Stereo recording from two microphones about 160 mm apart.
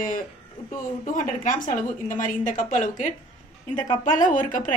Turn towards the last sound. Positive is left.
turn(degrees=55)  # may be behind; listen again after turning